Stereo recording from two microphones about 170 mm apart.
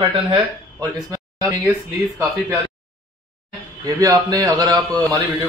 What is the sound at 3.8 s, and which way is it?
A man's voice, 20° right (ahead or behind).